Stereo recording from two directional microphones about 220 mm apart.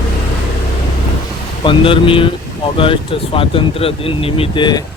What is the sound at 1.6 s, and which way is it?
Speech, 25° left (ahead or behind).